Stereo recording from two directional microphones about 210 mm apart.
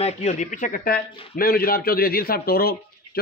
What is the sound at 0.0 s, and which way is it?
A man's voice, 35° left (ahead or behind).